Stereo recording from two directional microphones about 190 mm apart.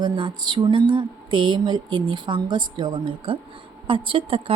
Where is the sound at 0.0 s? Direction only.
25° right (ahead or behind).